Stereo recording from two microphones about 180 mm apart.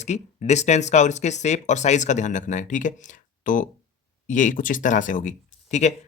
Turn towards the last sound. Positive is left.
turn(degrees=40)  # may be behind; listen again after turning